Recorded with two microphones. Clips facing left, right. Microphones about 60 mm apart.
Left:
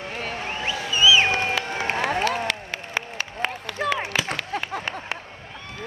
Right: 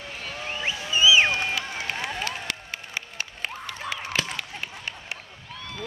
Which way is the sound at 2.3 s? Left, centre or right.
Left.